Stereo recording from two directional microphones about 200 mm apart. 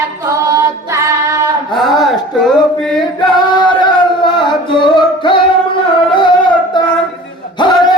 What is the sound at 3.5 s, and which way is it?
Singing, 20° left (ahead or behind).